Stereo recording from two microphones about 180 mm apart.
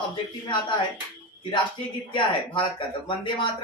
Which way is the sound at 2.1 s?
30° left (ahead or behind).